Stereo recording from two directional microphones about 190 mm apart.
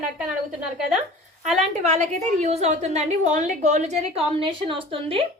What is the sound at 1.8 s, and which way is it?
A woman's voice, 40° right (ahead or behind).